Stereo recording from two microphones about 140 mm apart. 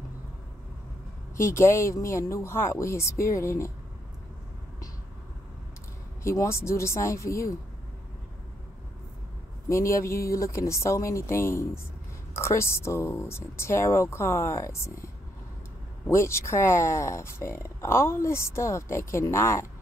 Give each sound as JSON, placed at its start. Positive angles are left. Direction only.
{"t": 1.3, "sound": "speech", "side_deg": 20}
{"t": 6.2, "sound": "speech", "side_deg": 20}
{"t": 9.7, "sound": "speech", "side_deg": 20}
{"t": 16.1, "sound": "speech", "side_deg": 20}